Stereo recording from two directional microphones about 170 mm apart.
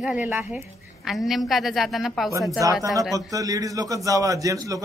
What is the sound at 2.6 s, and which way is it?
A man's voice, 20° right (ahead or behind).